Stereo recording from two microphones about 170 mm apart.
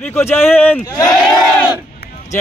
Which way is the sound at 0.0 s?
15° left (ahead or behind).